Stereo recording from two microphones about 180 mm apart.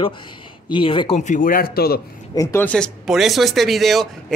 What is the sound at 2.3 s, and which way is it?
Speech, 15° left (ahead or behind).